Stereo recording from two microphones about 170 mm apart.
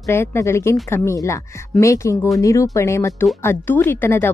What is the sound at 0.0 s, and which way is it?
Speech, 15° left (ahead or behind).